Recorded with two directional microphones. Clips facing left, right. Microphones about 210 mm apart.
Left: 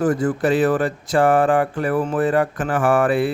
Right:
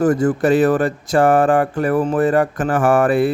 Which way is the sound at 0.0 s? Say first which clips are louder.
Right 3 dB; 45° right (ahead or behind).